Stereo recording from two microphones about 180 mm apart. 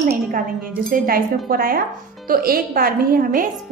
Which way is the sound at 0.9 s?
55° right (ahead or behind).